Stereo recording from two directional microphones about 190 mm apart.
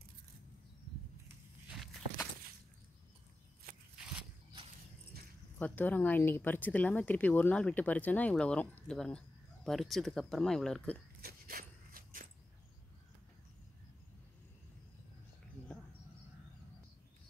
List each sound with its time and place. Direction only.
5.6 s speech: 10° left (ahead or behind)
11.1 s dog: 50° right (ahead or behind)